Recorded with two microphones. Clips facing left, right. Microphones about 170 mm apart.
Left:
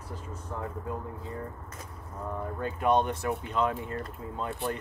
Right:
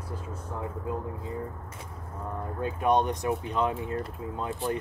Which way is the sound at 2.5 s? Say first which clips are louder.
Right 1 dB; 15° right (ahead or behind).